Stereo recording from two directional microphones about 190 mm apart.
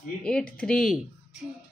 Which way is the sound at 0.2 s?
5° left (ahead or behind).